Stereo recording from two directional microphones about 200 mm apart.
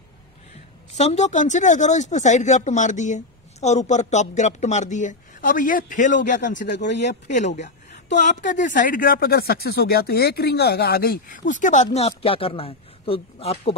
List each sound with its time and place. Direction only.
0.9 s a man's voice: 35° left (ahead or behind)
6.9 s speech: 60° left (ahead or behind)
7.2 s a man's voice: 35° left (ahead or behind)